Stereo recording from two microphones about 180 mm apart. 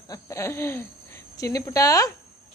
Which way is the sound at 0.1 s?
15° left (ahead or behind).